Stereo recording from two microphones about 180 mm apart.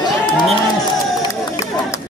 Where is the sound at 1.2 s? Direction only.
15° left (ahead or behind).